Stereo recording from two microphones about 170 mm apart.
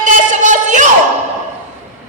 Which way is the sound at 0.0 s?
45° right (ahead or behind).